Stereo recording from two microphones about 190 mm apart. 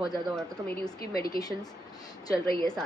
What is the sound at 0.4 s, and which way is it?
Speech, 5° left (ahead or behind).